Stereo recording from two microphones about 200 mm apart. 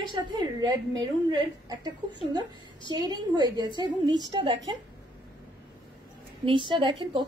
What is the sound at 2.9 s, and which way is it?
Speech, 20° right (ahead or behind).